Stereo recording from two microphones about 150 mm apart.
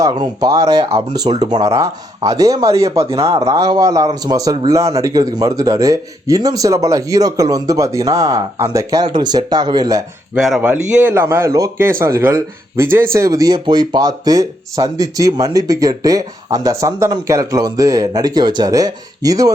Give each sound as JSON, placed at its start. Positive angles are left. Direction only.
{"t": 0.0, "sound": "speech", "side_deg": -30}
{"t": 10.3, "sound": "a man's voice", "side_deg": -5}